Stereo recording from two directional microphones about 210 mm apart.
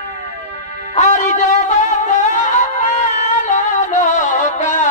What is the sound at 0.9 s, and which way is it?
Music, 35° left (ahead or behind).